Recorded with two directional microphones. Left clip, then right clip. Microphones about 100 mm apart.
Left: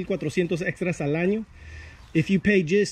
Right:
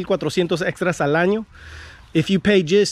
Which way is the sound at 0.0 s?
25° left (ahead or behind).